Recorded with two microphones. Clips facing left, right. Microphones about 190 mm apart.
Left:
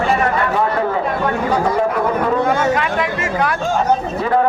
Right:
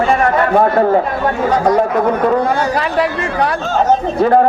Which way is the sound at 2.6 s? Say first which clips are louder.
Right 1 dB; 35° right (ahead or behind).